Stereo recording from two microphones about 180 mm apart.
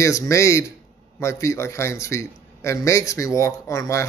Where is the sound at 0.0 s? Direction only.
15° left (ahead or behind).